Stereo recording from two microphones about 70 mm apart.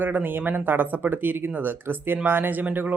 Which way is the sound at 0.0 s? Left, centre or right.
Right.